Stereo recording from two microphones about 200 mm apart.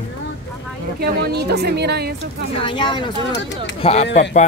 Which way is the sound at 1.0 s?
55° right (ahead or behind).